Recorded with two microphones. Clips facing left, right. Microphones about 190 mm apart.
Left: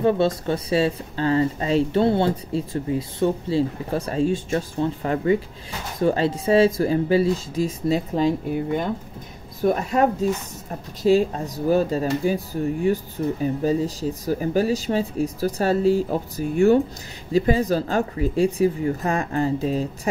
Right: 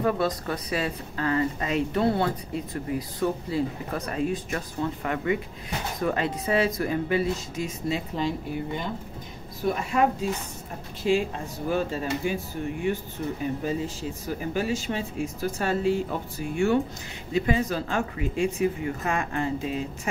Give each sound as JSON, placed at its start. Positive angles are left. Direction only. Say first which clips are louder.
{"t": 0.0, "sound": "speech", "louder": "left 5 dB", "side_deg": 25}
{"t": 9.6, "sound": "speech", "louder": "left 5 dB", "side_deg": 40}